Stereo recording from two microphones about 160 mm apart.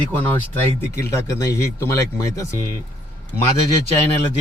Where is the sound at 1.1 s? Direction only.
20° left (ahead or behind).